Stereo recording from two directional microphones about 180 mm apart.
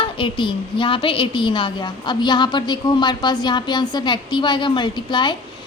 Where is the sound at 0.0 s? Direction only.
25° left (ahead or behind).